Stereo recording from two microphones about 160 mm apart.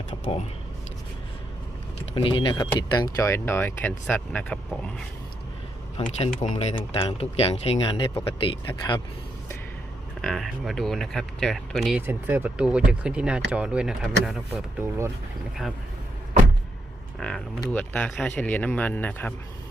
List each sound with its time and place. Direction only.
2.1 s speech: 30° left (ahead or behind); by 5.0 s 5° left (ahead or behind)
6.1 s speech: 40° left (ahead or behind)
10.2 s speech: 5° left (ahead or behind)
12.0 s speech: 10° right (ahead or behind)
17.2 s speech: 5° left (ahead or behind)